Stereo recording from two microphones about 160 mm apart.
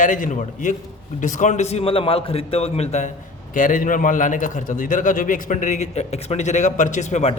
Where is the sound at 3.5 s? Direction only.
55° left (ahead or behind).